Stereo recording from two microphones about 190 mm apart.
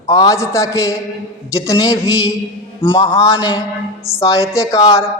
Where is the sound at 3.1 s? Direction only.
25° left (ahead or behind).